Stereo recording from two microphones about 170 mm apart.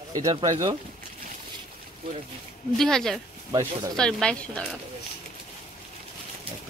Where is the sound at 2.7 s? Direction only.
5° left (ahead or behind).